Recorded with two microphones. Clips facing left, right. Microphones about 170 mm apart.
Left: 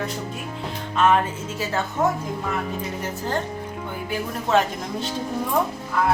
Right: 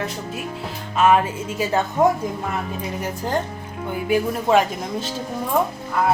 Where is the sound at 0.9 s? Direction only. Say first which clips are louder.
Right 3 dB; 10° right (ahead or behind).